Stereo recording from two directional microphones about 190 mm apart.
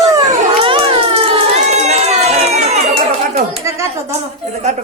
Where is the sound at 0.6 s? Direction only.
30° right (ahead or behind).